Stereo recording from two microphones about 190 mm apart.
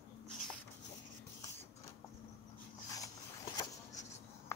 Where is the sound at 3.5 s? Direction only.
20° left (ahead or behind).